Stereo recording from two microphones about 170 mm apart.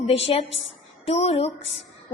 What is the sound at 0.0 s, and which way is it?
A woman's voice, 35° left (ahead or behind).